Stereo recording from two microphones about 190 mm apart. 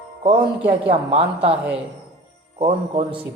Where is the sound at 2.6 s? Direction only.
30° right (ahead or behind).